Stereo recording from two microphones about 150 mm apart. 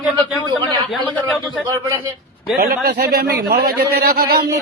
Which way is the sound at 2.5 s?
90° right.